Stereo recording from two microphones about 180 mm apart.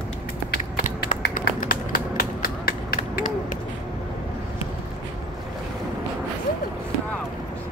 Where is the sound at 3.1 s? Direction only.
45° left (ahead or behind).